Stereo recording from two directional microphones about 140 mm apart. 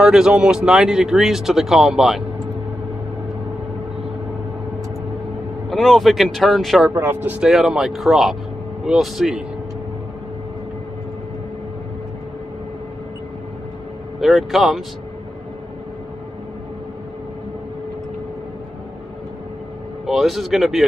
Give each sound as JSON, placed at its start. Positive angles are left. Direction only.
{"t": 0.0, "sound": "speech", "side_deg": -5}
{"t": 5.7, "sound": "speech", "side_deg": 0}
{"t": 6.9, "sound": "speech", "side_deg": -15}
{"t": 14.2, "sound": "speech", "side_deg": 0}
{"t": 20.1, "sound": "speech", "side_deg": 0}